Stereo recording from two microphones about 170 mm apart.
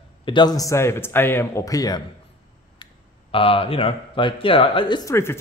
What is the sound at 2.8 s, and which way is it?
Speech, 30° left (ahead or behind).